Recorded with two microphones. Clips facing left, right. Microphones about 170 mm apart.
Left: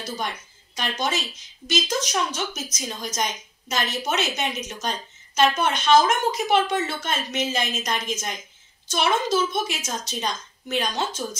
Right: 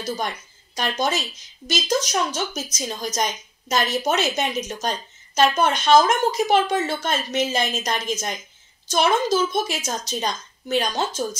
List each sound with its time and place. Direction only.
0.7 s a woman's voice: 40° right (ahead or behind)